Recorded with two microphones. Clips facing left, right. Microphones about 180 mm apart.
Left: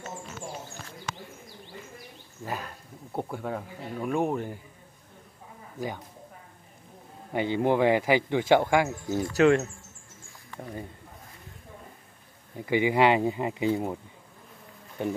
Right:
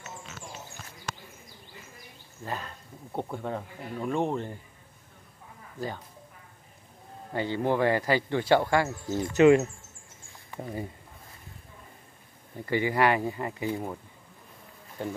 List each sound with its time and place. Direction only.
2.4 s speech: 10° left (ahead or behind)
7.3 s speech: 15° left (ahead or behind)
9.4 s speech: 5° right (ahead or behind)
12.5 s speech: 15° left (ahead or behind)